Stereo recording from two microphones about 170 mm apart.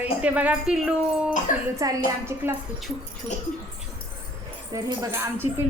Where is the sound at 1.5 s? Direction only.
50° left (ahead or behind).